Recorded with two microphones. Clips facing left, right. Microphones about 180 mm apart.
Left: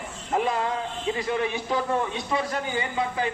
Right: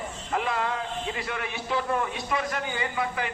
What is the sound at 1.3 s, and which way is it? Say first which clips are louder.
A man's voice: left 6 dB; 30° left (ahead or behind).